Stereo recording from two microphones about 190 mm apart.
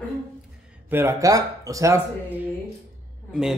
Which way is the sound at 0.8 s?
10° right (ahead or behind).